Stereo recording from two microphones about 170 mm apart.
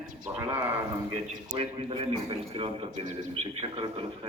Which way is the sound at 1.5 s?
35° right (ahead or behind).